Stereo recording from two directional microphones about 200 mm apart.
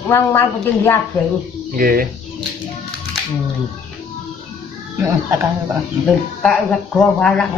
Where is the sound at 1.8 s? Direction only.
45° right (ahead or behind).